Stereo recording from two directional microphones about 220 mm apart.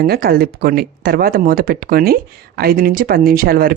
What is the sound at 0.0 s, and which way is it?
Speech, 45° right (ahead or behind).